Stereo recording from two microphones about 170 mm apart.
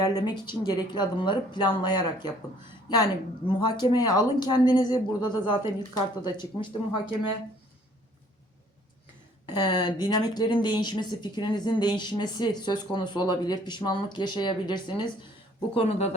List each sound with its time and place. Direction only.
0.0 s speech: 20° left (ahead or behind)
9.6 s speech: 25° left (ahead or behind)
15.7 s speech: 40° left (ahead or behind)